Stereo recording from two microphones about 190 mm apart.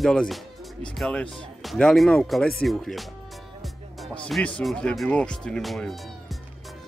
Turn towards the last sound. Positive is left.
turn(degrees=0)  # may be behind; listen again after turning